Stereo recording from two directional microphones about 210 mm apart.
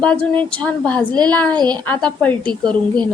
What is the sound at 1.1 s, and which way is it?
Speech, 20° right (ahead or behind).